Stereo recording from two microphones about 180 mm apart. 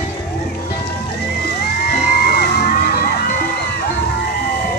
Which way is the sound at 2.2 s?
60° left (ahead or behind).